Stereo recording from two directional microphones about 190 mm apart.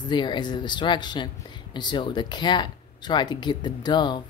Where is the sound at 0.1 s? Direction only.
25° left (ahead or behind).